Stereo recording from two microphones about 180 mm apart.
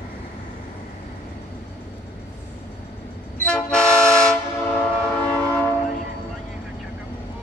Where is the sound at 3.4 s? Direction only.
5° left (ahead or behind).